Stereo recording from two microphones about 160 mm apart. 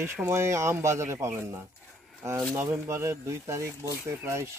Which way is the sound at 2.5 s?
15° right (ahead or behind).